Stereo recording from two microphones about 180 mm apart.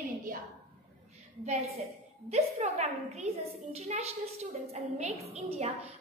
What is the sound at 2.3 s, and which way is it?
A woman's voice, 40° right (ahead or behind).